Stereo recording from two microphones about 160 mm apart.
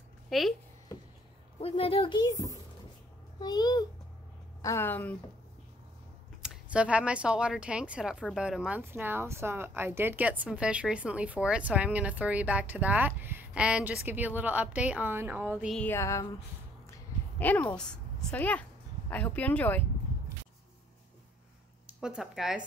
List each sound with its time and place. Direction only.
0.3 s speech: centre (ahead or behind)
1.6 s a child's voice: 35° left (ahead or behind); by 5.1 s 10° left (ahead or behind)
6.4 s speech: 5° right (ahead or behind)
15.7 s a woman's voice: 10° left (ahead or behind)
17.4 s a woman's voice: 10° left (ahead or behind)
21.8 s speech: 5° right (ahead or behind)